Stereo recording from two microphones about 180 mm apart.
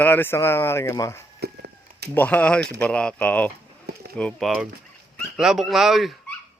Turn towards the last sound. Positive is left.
turn(degrees=0)  # may be behind; listen again after turning